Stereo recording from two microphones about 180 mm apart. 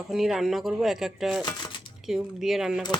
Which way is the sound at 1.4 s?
25° left (ahead or behind).